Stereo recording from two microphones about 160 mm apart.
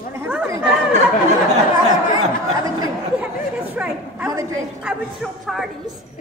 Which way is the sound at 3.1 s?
10° right (ahead or behind).